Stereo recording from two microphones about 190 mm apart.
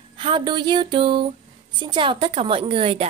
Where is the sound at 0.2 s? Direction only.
25° right (ahead or behind).